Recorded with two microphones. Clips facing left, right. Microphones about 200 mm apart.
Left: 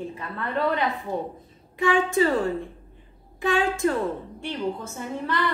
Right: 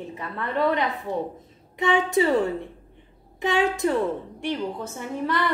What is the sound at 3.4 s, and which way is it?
Speech, 20° right (ahead or behind).